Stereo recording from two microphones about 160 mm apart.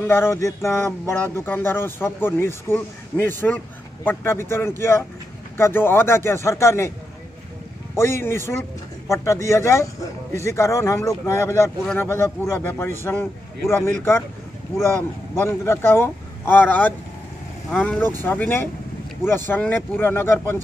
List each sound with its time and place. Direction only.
0.0 s speech: 15° left (ahead or behind)
8.0 s speech: 15° left (ahead or behind)